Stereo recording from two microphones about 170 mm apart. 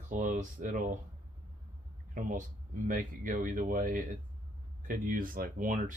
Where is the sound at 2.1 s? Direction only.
50° right (ahead or behind).